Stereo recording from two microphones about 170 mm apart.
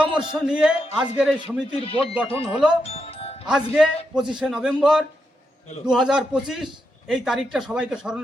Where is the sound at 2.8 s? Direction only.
35° left (ahead or behind).